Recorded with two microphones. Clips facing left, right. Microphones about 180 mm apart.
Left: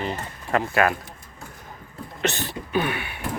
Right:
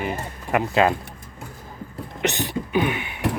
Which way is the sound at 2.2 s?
15° right (ahead or behind).